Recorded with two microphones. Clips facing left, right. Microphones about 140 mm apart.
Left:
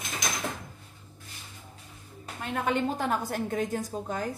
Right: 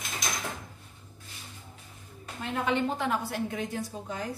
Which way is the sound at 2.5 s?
45° left (ahead or behind).